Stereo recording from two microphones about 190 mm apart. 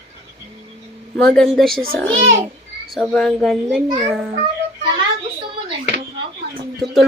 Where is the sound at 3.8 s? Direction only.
20° right (ahead or behind).